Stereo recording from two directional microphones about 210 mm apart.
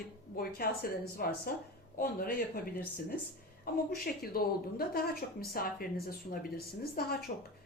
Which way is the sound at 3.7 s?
45° left (ahead or behind).